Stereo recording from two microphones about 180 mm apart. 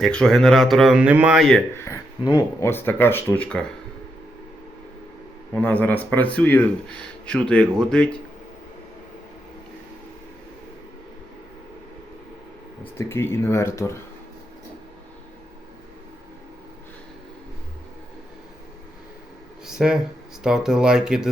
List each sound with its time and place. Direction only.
0.0 s speech: 5° left (ahead or behind)
1.8 s speech: 20° left (ahead or behind)
5.5 s speech: 10° left (ahead or behind)
13.0 s speech: 15° left (ahead or behind)
19.6 s a sound: 5° right (ahead or behind)
20.4 s speech: 5° right (ahead or behind)